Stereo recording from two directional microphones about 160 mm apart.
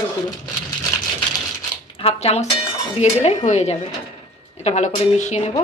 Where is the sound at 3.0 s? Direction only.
45° left (ahead or behind).